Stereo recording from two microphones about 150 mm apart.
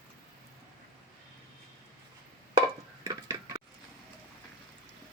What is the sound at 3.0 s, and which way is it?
Tick-tock, 25° right (ahead or behind).